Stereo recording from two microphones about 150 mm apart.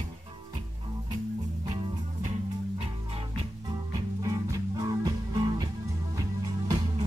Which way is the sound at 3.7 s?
25° right (ahead or behind).